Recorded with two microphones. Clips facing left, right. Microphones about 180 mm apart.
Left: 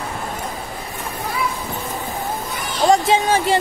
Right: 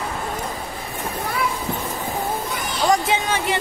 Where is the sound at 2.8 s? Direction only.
30° left (ahead or behind).